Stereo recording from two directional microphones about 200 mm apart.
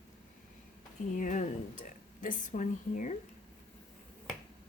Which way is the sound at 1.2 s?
40° left (ahead or behind).